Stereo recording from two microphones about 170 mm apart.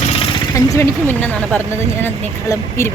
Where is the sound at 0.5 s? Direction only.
15° left (ahead or behind).